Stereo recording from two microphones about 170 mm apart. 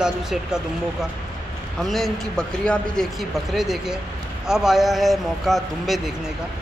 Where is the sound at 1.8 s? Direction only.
Centre (ahead or behind).